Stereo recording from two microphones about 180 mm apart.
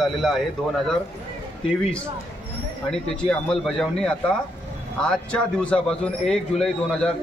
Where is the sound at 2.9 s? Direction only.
5° left (ahead or behind).